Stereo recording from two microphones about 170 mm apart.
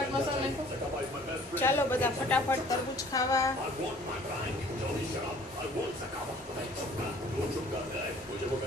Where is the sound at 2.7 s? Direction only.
20° left (ahead or behind).